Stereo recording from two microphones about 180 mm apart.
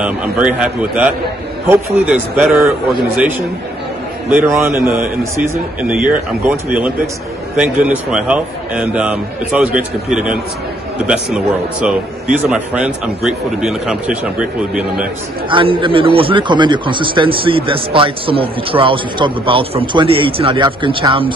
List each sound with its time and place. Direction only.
0.0 s a man's voice: 5° right (ahead or behind)
5.3 s a man's voice: 15° right (ahead or behind)
15.5 s a man's voice: 30° right (ahead or behind)